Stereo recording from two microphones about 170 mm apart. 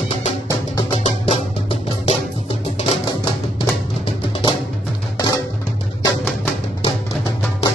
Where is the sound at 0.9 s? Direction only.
35° left (ahead or behind).